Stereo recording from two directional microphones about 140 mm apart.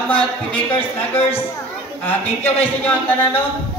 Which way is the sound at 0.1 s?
10° left (ahead or behind).